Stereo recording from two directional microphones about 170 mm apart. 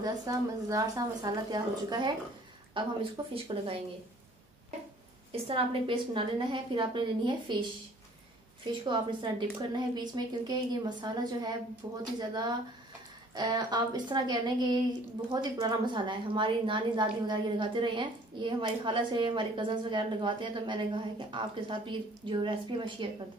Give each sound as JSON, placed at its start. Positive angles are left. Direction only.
{"t": 0.0, "sound": "a woman's voice", "side_deg": -20}
{"t": 5.3, "sound": "a woman's voice", "side_deg": -30}
{"t": 8.8, "sound": "a woman's voice", "side_deg": -30}